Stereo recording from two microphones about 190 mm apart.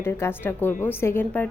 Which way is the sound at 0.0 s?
10° left (ahead or behind).